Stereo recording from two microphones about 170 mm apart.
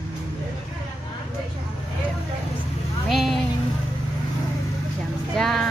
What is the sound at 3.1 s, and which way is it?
Speech, centre (ahead or behind).